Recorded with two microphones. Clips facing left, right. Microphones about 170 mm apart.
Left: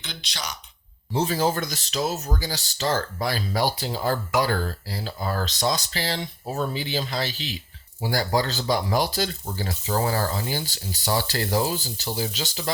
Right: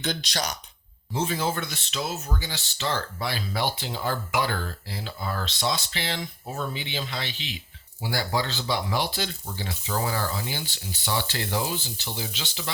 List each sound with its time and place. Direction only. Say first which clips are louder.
0.0 s speech: right 7 dB; 45° right (ahead or behind)
1.1 s speech: left 4 dB; 35° left (ahead or behind)